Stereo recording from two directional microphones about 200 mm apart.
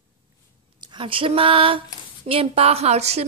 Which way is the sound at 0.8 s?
25° right (ahead or behind).